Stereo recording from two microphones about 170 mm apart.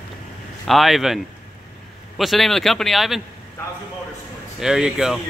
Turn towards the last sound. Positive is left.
turn(degrees=-5)  # may be behind; listen again after turning